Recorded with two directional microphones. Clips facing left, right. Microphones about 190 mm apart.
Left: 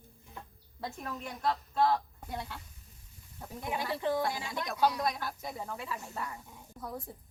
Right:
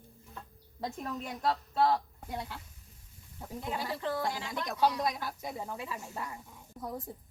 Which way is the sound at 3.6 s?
15° left (ahead or behind).